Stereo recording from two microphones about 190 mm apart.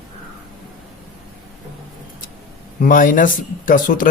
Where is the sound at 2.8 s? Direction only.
45° left (ahead or behind).